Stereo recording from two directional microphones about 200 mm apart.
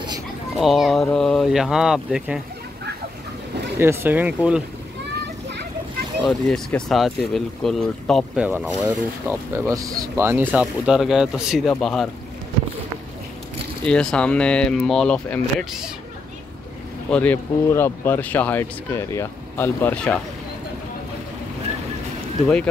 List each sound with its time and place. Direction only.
0.6 s speech: centre (ahead or behind)
3.8 s speech: 10° right (ahead or behind)
6.2 s speech: 5° left (ahead or behind)
8.5 s speech: 10° right (ahead or behind)
13.8 s speech: 5° left (ahead or behind)
17.1 s speech: 10° left (ahead or behind)